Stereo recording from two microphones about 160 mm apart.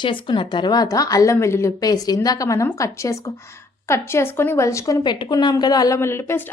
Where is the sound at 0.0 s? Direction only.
30° left (ahead or behind).